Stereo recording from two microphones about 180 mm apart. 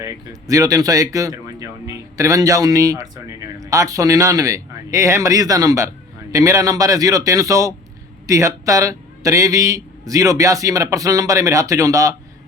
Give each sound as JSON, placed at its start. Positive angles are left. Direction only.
{"t": 0.0, "sound": "a man's voice", "side_deg": -15}